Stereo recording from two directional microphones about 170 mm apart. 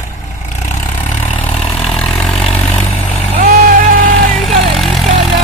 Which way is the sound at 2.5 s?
15° left (ahead or behind).